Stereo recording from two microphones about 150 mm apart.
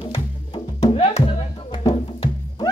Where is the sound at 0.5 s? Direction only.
40° left (ahead or behind).